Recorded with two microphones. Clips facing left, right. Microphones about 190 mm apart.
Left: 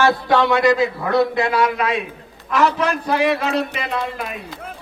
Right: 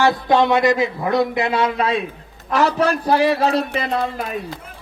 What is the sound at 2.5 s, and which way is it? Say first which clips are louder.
A man's voice: right 1 dB; 35° right (ahead or behind).